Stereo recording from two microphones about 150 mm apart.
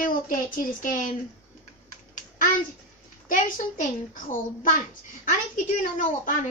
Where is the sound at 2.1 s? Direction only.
65° left (ahead or behind).